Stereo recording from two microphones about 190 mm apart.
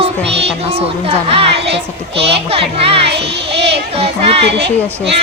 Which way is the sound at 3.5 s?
30° right (ahead or behind).